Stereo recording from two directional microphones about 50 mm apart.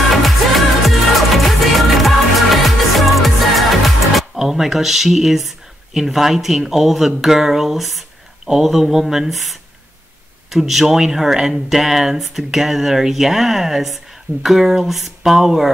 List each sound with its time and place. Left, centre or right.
0.8 s music: centre
4.1 s speech: centre